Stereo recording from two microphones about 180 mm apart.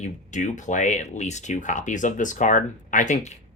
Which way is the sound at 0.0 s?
40° left (ahead or behind).